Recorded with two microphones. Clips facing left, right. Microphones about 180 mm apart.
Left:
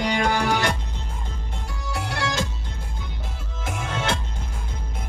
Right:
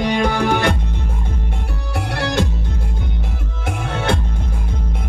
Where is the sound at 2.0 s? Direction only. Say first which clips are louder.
Right 6 dB; 60° right (ahead or behind).